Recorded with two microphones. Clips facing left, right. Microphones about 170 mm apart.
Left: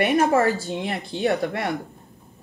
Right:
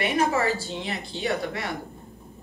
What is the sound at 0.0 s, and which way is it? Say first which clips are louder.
Speech: left 5 dB; 50° left (ahead or behind).